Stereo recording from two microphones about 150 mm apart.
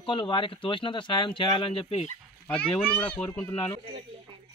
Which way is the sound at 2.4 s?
10° left (ahead or behind).